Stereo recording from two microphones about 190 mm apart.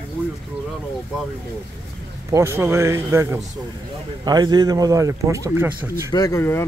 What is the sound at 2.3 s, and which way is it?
Speech, 15° right (ahead or behind).